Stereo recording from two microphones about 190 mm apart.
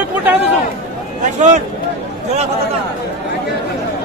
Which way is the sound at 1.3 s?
40° right (ahead or behind).